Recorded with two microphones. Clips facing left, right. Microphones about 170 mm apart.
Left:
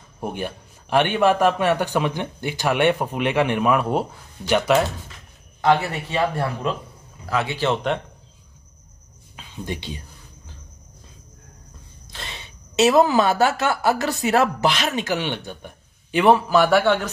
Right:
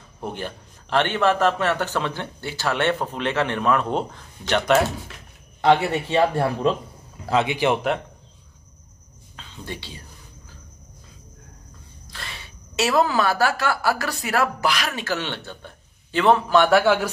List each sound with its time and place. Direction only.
0.2 s a man's voice: 15° left (ahead or behind)
5.6 s a man's voice: 25° right (ahead or behind)
9.4 s speech: 20° left (ahead or behind)
12.1 s a woman's voice: 20° left (ahead or behind); by 17.1 s 5° right (ahead or behind)